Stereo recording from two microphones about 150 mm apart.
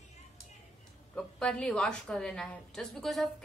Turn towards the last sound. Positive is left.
turn(degrees=0)  # may be behind; listen again after turning